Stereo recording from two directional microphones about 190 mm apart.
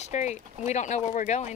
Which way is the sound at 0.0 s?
35° left (ahead or behind).